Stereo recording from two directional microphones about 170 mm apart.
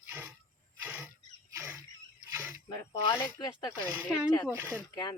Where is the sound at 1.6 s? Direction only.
15° right (ahead or behind).